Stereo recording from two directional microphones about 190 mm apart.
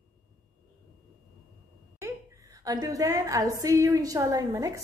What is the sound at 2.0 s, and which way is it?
A woman's voice, 15° right (ahead or behind).